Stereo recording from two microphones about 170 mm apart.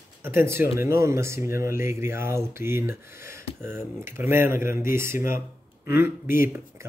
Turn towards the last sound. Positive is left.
turn(degrees=-15)  # may be behind; listen again after turning